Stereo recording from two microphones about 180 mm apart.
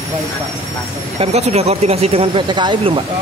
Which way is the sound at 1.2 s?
35° right (ahead or behind).